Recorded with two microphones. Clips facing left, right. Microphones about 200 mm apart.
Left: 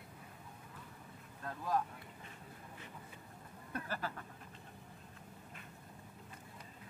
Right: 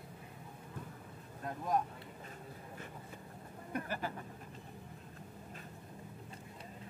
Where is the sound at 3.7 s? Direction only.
15° right (ahead or behind).